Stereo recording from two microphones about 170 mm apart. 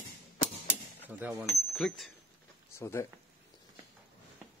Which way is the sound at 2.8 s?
15° left (ahead or behind).